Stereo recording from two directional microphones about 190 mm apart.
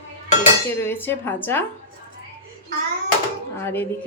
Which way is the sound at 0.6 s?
10° left (ahead or behind).